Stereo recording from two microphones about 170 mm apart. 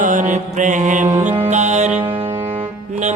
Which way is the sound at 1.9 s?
10° right (ahead or behind).